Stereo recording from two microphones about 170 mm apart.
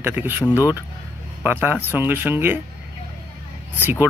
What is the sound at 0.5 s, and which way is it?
Speech, 20° left (ahead or behind).